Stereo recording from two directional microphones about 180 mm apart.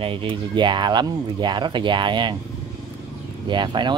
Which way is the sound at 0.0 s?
30° right (ahead or behind).